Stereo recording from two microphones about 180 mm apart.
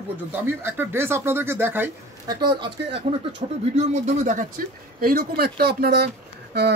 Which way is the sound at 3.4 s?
30° right (ahead or behind).